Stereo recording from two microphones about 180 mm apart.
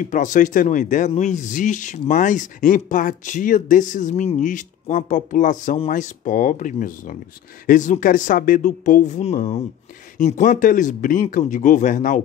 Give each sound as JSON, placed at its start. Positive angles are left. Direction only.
{"t": 0.0, "sound": "speech", "side_deg": 45}